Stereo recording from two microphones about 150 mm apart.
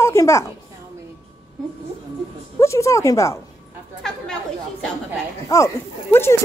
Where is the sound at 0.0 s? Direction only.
20° left (ahead or behind).